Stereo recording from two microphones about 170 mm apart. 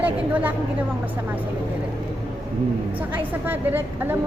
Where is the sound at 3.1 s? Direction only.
10° right (ahead or behind).